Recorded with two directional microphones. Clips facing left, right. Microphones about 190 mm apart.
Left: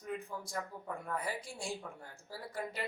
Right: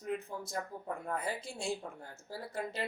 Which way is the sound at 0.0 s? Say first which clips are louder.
Right 3 dB; 25° right (ahead or behind).